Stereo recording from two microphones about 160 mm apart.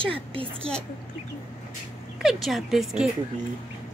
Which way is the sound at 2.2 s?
Centre (ahead or behind).